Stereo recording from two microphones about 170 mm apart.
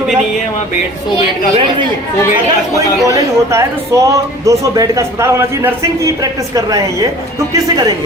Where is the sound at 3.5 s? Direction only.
15° right (ahead or behind).